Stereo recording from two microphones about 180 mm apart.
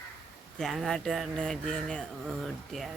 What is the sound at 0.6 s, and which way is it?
A woman's voice, centre (ahead or behind).